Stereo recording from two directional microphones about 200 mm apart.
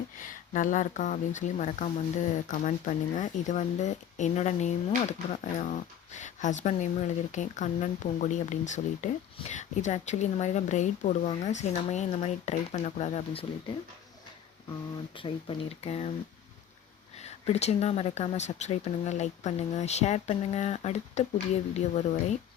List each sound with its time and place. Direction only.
0.2 s speech: 40° left (ahead or behind)
15.1 s speech: 25° left (ahead or behind)
17.2 s speech: 35° left (ahead or behind)